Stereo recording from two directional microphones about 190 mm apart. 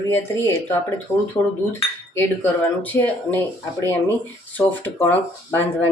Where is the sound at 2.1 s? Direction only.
10° left (ahead or behind).